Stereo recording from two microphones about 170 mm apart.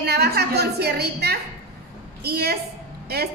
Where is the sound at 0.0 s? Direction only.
70° right (ahead or behind).